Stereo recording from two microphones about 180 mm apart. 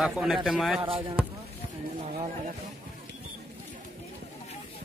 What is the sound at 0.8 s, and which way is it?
Speech, 30° right (ahead or behind).